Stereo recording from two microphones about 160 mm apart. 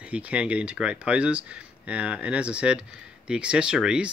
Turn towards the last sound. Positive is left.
turn(degrees=-5)  # may be behind; listen again after turning